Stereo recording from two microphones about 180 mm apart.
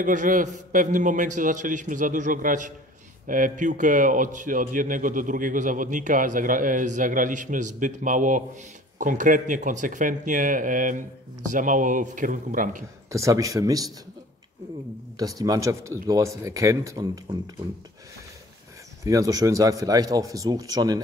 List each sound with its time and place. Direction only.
0.0 s a man's voice: 45° right (ahead or behind)
13.1 s speech: 15° right (ahead or behind)
15.1 s speech: 20° right (ahead or behind)
19.0 s speech: 20° right (ahead or behind)